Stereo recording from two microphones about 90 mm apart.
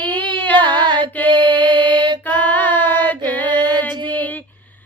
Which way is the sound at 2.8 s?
20° left (ahead or behind).